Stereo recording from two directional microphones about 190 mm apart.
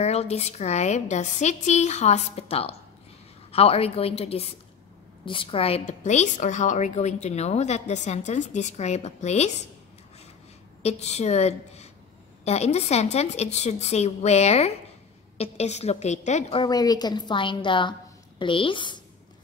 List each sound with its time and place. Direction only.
0.0 s a woman's voice: 35° left (ahead or behind)
10.8 s a woman's voice: 35° left (ahead or behind)